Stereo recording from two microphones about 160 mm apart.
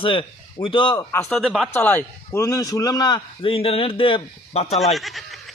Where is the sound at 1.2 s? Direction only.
5° left (ahead or behind); by 4.7 s 40° left (ahead or behind).